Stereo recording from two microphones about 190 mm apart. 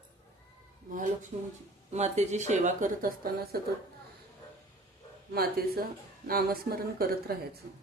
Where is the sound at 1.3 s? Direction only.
35° right (ahead or behind).